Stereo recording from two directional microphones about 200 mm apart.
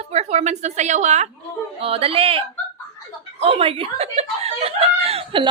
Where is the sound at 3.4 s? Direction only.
30° right (ahead or behind).